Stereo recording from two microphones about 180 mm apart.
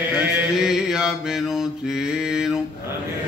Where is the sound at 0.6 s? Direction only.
5° right (ahead or behind).